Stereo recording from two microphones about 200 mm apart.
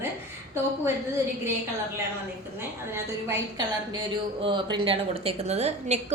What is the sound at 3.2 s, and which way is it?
A woman's voice, 15° right (ahead or behind).